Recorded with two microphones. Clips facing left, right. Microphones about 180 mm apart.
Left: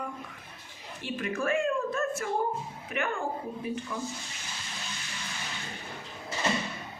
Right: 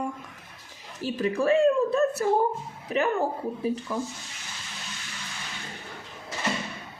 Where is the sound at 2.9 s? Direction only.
35° right (ahead or behind).